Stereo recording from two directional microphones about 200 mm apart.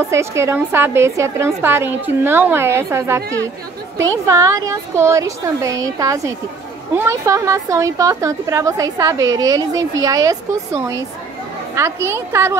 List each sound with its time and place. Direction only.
0.1 s a woman's voice: 15° right (ahead or behind)